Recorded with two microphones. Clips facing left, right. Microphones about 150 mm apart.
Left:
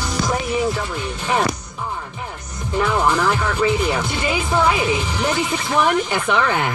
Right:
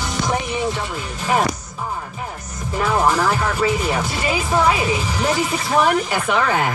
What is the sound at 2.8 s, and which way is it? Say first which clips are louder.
Speech: right 1 dB; 5° right (ahead or behind).